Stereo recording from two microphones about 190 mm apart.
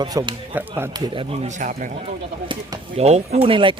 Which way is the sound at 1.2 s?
35° right (ahead or behind).